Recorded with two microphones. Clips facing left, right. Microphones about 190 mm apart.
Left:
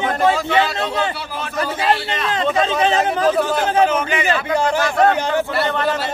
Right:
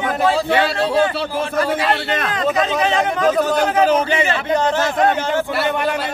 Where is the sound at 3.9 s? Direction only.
35° right (ahead or behind).